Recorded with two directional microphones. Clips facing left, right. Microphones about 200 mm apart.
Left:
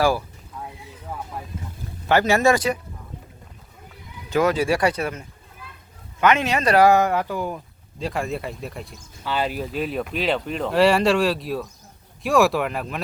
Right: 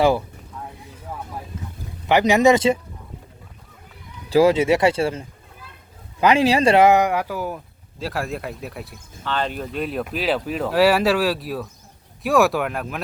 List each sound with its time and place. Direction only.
2.0 s speech: 15° right (ahead or behind)
4.3 s speech: 30° right (ahead or behind); by 9.0 s 5° right (ahead or behind)
9.2 s speech: 10° left (ahead or behind)